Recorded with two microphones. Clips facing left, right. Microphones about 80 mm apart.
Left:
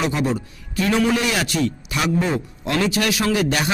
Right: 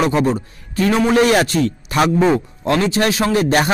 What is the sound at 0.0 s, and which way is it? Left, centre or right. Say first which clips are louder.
A man's voice: right 5 dB; right.